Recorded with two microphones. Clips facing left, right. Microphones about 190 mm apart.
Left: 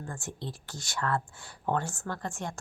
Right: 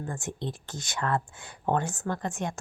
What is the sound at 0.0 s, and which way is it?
A woman's voice, 20° right (ahead or behind).